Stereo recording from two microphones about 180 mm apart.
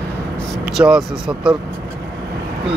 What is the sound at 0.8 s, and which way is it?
Speech, centre (ahead or behind).